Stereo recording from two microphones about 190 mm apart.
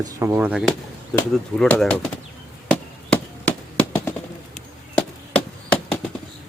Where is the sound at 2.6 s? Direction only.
5° left (ahead or behind).